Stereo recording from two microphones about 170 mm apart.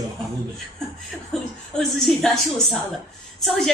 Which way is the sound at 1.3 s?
Centre (ahead or behind).